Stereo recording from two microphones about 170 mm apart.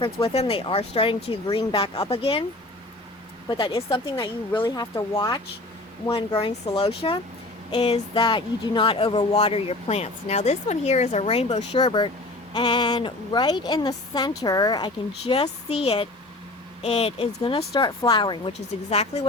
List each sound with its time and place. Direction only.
0.0 s speech: 35° left (ahead or behind)
3.6 s a woman's voice: 30° left (ahead or behind)
11.8 s a woman's voice: 30° left (ahead or behind)
18.9 s speech: 40° left (ahead or behind)